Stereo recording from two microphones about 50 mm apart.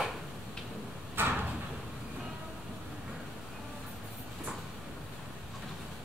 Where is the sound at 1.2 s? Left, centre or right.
Right.